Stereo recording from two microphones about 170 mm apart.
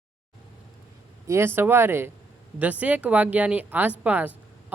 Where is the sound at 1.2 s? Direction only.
15° right (ahead or behind).